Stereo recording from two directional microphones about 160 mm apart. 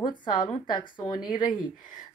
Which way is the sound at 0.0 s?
30° left (ahead or behind).